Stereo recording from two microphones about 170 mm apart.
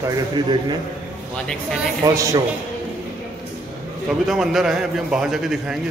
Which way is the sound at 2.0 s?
20° right (ahead or behind).